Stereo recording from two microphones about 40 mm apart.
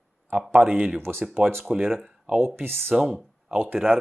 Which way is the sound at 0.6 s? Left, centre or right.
Right.